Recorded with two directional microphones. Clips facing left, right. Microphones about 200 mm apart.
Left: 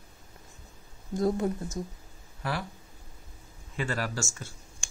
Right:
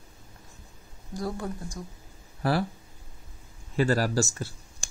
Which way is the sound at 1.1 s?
20° left (ahead or behind).